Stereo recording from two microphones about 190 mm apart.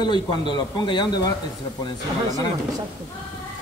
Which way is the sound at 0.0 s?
25° left (ahead or behind).